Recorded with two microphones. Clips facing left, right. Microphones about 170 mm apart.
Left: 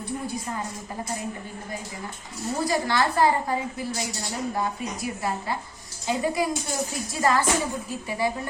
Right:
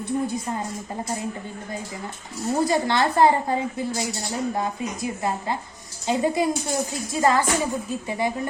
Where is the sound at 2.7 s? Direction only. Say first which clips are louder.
Right 3 dB; 25° right (ahead or behind).